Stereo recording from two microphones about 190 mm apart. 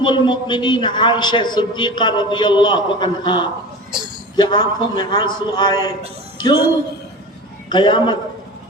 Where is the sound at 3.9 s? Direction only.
25° right (ahead or behind).